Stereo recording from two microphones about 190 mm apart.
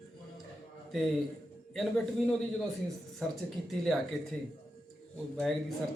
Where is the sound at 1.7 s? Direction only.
5° left (ahead or behind).